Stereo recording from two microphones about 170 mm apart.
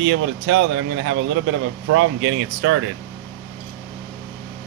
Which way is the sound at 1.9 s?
90° right.